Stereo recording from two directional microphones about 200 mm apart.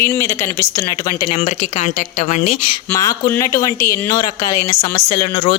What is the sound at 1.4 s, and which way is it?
Speech, 35° left (ahead or behind).